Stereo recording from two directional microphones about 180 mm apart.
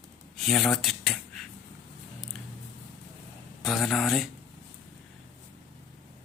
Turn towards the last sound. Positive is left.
turn(degrees=0)  # may be behind; listen again after turning